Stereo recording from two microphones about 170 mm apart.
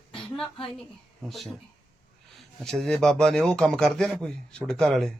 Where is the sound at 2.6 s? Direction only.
Centre (ahead or behind).